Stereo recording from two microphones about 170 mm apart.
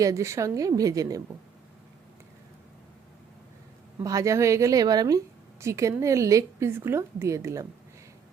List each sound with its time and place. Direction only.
0.0 s a woman's voice: 20° right (ahead or behind)
4.0 s a woman's voice: 20° right (ahead or behind)